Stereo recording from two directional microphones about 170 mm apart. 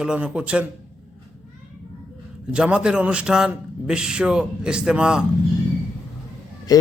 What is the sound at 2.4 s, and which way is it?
A man's voice, 5° right (ahead or behind).